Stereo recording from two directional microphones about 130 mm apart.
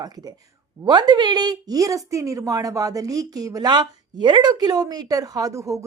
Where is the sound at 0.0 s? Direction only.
30° right (ahead or behind).